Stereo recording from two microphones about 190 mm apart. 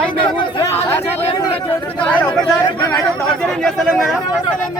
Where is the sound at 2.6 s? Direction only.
20° left (ahead or behind).